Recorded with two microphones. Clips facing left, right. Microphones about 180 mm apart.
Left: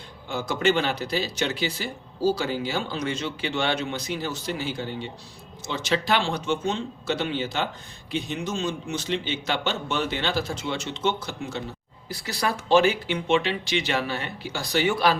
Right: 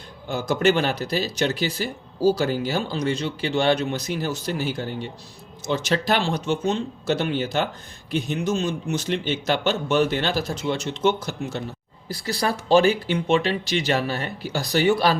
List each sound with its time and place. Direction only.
0.3 s speech: 40° right (ahead or behind)